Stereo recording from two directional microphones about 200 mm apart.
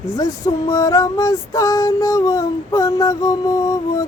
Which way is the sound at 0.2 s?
15° left (ahead or behind).